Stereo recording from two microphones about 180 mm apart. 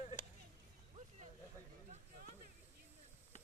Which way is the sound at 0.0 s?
40° left (ahead or behind).